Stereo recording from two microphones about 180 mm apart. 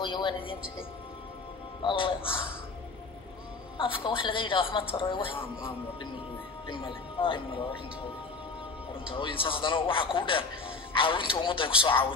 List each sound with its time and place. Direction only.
0.0 s music: 25° left (ahead or behind)
1.8 s speech: 30° left (ahead or behind)
3.7 s speech: 30° left (ahead or behind)
9.0 s speech: 30° left (ahead or behind)